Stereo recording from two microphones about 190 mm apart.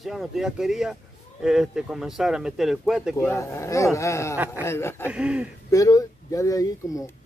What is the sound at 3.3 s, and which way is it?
Speech, 15° left (ahead or behind).